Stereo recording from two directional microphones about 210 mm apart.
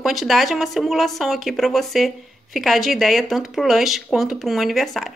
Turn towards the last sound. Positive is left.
turn(degrees=0)  # may be behind; listen again after turning